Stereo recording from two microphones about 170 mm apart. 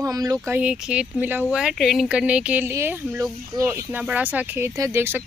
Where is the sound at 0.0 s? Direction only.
20° right (ahead or behind).